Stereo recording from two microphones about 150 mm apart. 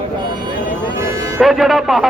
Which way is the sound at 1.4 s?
Centre (ahead or behind).